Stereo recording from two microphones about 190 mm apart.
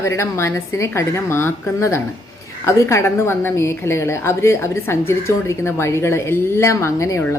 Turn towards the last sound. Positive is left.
turn(degrees=15)  # may be behind; listen again after turning